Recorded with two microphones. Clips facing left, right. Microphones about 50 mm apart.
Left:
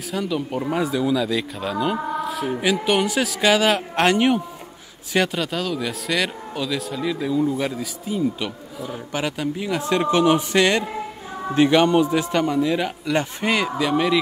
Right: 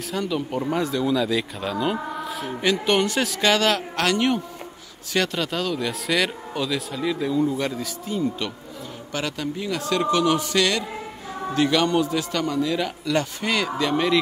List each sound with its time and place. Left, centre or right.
0.1 s speech: centre
3.9 s a man's voice: left
5.4 s a man's voice: centre; by 13.7 s left
13.7 s speech: centre